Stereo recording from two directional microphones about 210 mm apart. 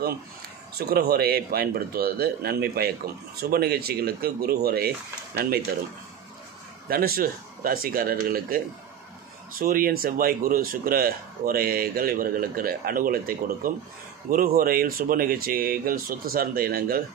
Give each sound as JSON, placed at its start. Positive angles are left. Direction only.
{"t": 0.7, "sound": "speech", "side_deg": -50}
{"t": 6.9, "sound": "speech", "side_deg": -45}